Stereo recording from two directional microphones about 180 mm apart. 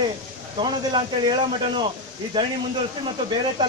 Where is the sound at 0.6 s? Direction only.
25° right (ahead or behind).